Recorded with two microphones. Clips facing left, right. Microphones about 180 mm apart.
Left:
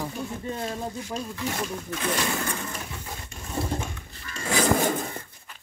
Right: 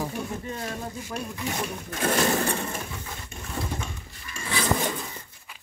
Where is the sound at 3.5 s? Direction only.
30° left (ahead or behind).